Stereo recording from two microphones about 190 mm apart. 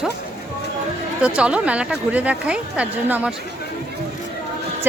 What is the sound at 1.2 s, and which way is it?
A woman's voice, 5° right (ahead or behind).